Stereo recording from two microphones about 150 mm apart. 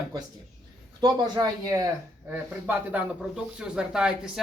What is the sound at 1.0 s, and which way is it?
Speech, 25° right (ahead or behind).